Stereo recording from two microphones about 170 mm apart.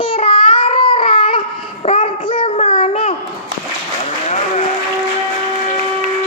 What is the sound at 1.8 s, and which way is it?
Child singing, 35° left (ahead or behind).